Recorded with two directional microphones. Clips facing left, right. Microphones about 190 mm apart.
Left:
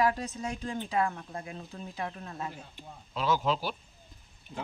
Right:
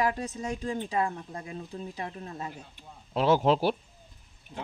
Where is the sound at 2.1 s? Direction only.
25° right (ahead or behind).